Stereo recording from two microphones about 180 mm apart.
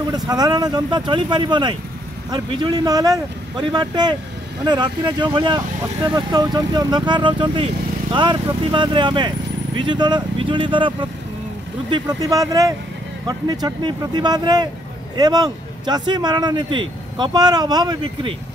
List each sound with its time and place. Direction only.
0.3 s speech: 20° right (ahead or behind)